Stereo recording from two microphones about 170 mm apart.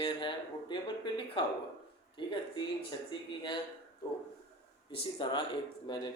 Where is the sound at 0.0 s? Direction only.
30° left (ahead or behind).